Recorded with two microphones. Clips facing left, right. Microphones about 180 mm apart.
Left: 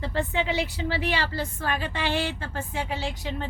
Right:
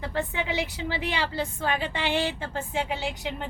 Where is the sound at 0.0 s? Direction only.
15° right (ahead or behind).